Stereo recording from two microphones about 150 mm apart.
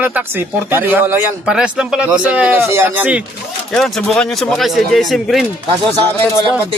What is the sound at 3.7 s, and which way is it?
Speech, centre (ahead or behind).